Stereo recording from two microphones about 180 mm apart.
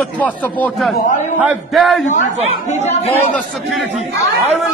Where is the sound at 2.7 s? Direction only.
35° left (ahead or behind).